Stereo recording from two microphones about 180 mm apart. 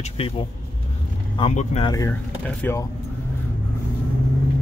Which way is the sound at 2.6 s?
15° left (ahead or behind).